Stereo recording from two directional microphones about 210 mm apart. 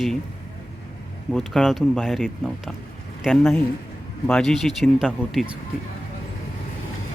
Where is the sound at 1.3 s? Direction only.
Centre (ahead or behind).